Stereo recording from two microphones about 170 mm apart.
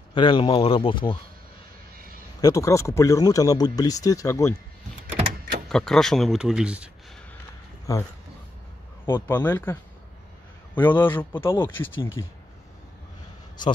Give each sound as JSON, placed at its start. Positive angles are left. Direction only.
{"t": 0.1, "sound": "speech", "side_deg": 30}
{"t": 2.4, "sound": "speech", "side_deg": 20}
{"t": 5.7, "sound": "speech", "side_deg": 5}
{"t": 7.9, "sound": "speech", "side_deg": 20}